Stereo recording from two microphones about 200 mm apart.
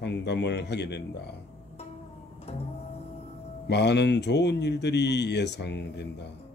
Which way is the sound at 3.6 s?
60° left (ahead or behind).